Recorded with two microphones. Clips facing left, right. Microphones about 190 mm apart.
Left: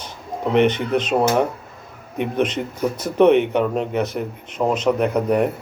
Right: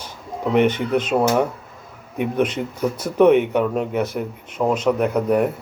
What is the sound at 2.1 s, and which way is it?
A man's voice, 10° right (ahead or behind).